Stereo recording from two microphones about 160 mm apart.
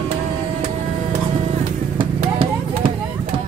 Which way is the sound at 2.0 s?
35° right (ahead or behind).